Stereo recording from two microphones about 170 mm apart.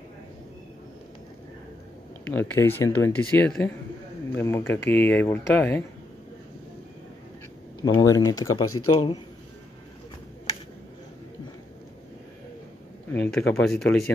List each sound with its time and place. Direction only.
2.2 s speech: 10° left (ahead or behind)
7.8 s speech: 20° left (ahead or behind)
13.1 s speech: 10° left (ahead or behind)